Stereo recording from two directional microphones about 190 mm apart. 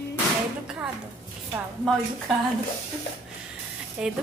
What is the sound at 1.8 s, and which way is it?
Speech, centre (ahead or behind).